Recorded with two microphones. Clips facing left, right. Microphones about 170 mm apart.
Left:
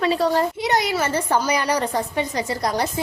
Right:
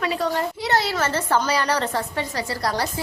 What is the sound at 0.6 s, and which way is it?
A woman's voice, 15° left (ahead or behind).